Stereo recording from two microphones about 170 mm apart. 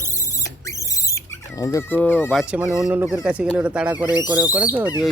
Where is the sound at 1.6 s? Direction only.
20° left (ahead or behind).